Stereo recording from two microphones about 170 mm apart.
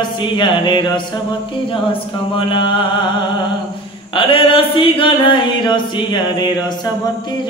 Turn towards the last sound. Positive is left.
turn(degrees=25)  # may be behind; listen again after turning